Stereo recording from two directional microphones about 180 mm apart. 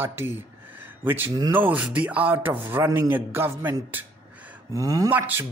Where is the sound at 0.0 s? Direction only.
15° right (ahead or behind).